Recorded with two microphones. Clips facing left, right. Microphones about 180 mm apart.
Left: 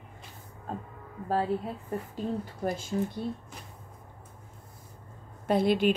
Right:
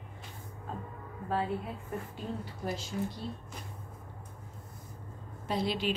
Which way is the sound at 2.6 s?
50° left (ahead or behind).